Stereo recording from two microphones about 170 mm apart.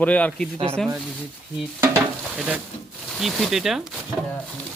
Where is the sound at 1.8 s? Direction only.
15° right (ahead or behind).